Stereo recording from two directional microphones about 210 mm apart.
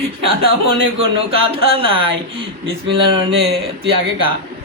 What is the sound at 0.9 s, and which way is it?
Speech, 25° right (ahead or behind).